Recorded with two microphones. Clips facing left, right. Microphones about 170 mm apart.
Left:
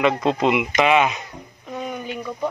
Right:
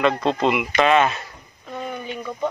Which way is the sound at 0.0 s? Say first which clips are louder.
Left 1 dB; 10° left (ahead or behind).